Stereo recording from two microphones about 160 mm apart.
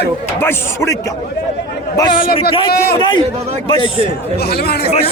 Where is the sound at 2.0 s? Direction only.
30° left (ahead or behind).